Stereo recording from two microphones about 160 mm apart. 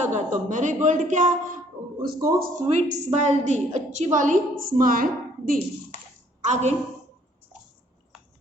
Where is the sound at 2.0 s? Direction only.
65° right (ahead or behind).